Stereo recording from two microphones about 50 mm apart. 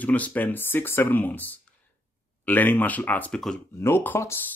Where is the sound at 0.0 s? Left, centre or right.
Left.